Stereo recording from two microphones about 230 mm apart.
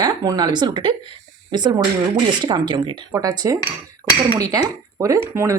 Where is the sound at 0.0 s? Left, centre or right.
Centre.